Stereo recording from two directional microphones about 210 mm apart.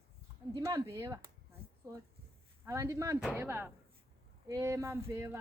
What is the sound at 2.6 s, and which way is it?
Speech, 15° right (ahead or behind).